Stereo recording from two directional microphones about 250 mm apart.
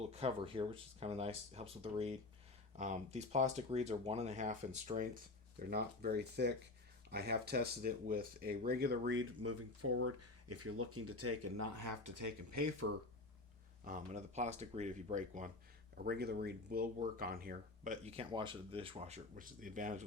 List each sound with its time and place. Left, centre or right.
0.0 s speech: right
5.7 s speech: right
13.8 s speech: right
16.0 s speech: right